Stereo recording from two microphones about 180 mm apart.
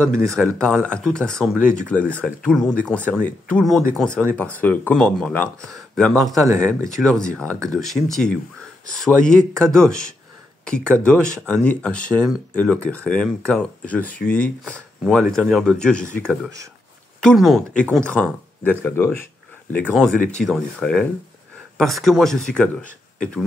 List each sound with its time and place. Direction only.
0.4 s speech: 5° left (ahead or behind)
6.3 s speech: 20° right (ahead or behind)
7.0 s speech: 5° left (ahead or behind)
17.2 s speech: centre (ahead or behind)